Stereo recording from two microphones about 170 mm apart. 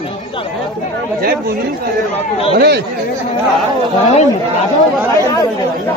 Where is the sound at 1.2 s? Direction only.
65° right (ahead or behind).